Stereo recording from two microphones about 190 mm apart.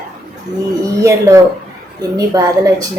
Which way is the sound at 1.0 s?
15° right (ahead or behind).